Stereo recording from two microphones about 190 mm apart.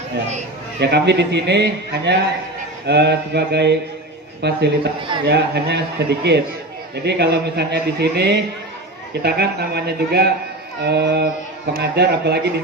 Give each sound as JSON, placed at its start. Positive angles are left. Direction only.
{"t": 0.8, "sound": "a man's voice", "side_deg": -60}
{"t": 4.9, "sound": "a man's voice", "side_deg": -25}
{"t": 5.2, "sound": "a man's voice", "side_deg": -60}